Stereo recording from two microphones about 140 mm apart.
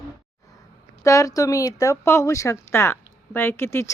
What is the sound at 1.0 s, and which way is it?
Speech, 25° left (ahead or behind).